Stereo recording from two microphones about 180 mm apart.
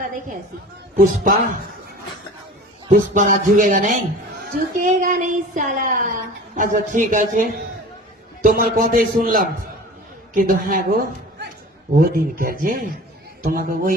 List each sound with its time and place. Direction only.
0.9 s speech: 50° right (ahead or behind)
2.9 s speech: 50° right (ahead or behind)
11.9 s speech: 50° right (ahead or behind)